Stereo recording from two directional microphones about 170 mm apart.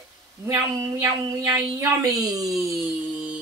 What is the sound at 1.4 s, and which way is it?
Speech, 20° right (ahead or behind).